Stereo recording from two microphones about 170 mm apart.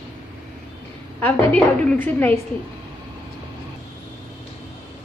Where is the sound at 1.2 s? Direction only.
5° left (ahead or behind).